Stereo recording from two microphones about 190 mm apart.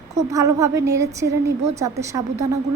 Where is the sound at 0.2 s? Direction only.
15° right (ahead or behind).